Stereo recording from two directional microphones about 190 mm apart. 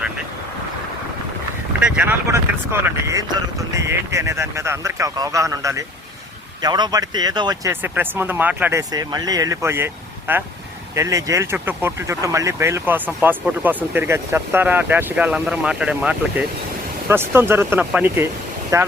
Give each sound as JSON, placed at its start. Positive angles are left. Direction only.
{"t": 1.8, "sound": "speech", "side_deg": -10}
{"t": 8.9, "sound": "speech", "side_deg": -20}